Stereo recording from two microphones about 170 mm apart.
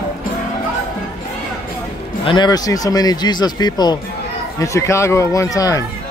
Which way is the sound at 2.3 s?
25° left (ahead or behind).